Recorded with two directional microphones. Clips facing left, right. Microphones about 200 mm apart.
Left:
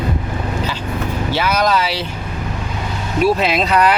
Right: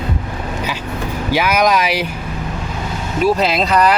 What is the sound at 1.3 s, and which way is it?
Speech, 10° right (ahead or behind).